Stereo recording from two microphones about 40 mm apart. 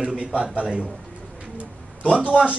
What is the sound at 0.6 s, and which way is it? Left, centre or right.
Speech, right.